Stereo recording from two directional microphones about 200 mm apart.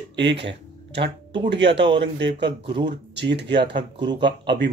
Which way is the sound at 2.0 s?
60° right (ahead or behind).